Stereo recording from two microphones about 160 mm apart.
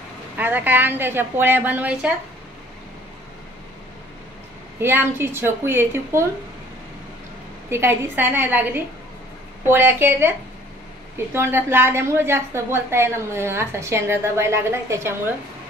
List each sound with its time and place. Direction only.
0.4 s a woman's voice: 10° right (ahead or behind)
4.7 s a woman's voice: 15° right (ahead or behind)
7.7 s a woman's voice: 15° right (ahead or behind)
11.3 s a woman's voice: 15° right (ahead or behind)